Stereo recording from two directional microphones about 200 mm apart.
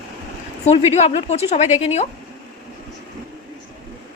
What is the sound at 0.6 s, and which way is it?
A woman's voice, 30° left (ahead or behind).